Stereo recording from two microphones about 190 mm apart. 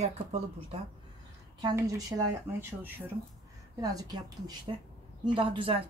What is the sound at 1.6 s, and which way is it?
A woman's voice, 20° right (ahead or behind).